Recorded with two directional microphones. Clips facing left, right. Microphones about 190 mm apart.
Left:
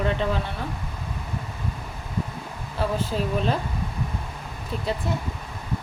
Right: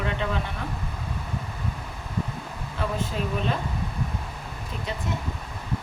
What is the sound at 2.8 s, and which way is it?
Speech, 35° left (ahead or behind).